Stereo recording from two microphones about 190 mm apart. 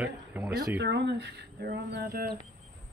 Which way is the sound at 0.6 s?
60° right (ahead or behind).